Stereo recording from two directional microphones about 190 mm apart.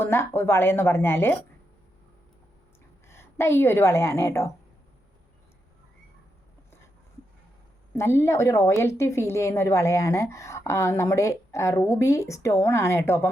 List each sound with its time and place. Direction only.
0.0 s speech: 15° left (ahead or behind)
3.1 s a woman's voice: 15° left (ahead or behind)
7.9 s speech: 15° left (ahead or behind)